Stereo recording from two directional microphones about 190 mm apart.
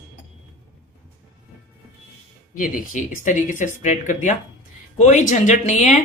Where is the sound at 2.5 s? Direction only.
45° left (ahead or behind).